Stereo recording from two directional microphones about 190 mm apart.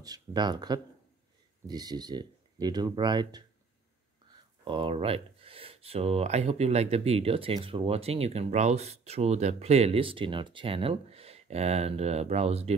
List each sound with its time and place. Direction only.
0.0 s speech: 20° right (ahead or behind)
4.6 s speech: 25° right (ahead or behind)